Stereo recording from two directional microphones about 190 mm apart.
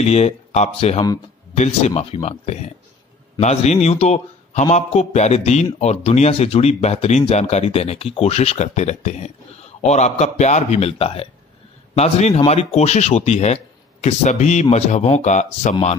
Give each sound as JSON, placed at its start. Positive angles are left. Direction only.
{"t": 0.1, "sound": "speech", "side_deg": 35}